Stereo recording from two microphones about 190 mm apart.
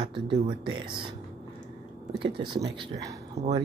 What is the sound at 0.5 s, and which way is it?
Speech, 25° right (ahead or behind).